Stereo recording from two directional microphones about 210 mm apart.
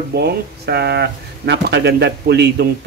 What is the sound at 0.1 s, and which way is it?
Speech, 50° right (ahead or behind).